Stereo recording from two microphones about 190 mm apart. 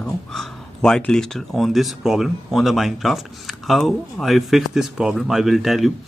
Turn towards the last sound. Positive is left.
turn(degrees=0)  # may be behind; listen again after turning